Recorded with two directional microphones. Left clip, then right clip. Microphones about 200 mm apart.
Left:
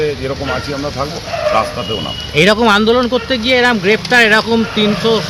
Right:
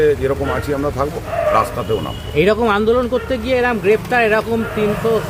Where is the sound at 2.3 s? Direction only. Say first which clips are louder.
Left 4 dB; 35° left (ahead or behind).